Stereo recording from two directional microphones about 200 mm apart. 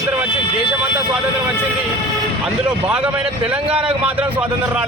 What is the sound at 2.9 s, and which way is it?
A man's voice, 5° right (ahead or behind).